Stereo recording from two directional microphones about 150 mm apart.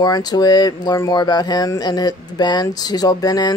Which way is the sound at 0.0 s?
25° left (ahead or behind).